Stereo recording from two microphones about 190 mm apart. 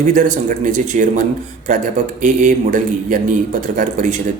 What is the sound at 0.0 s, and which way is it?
Speech, 45° right (ahead or behind).